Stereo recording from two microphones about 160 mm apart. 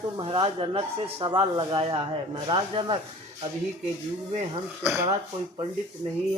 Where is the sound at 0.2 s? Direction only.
35° right (ahead or behind).